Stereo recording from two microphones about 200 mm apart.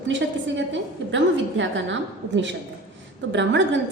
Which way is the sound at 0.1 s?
65° right (ahead or behind).